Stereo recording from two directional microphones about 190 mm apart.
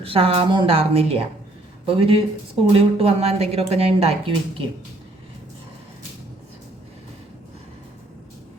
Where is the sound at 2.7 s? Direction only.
30° right (ahead or behind).